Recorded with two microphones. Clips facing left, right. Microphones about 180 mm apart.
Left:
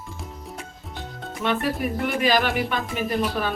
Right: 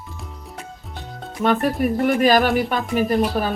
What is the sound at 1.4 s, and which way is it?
Speech, 45° right (ahead or behind).